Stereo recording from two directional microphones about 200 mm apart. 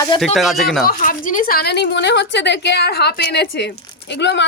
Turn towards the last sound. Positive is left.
turn(degrees=60)  # may be behind; listen again after turning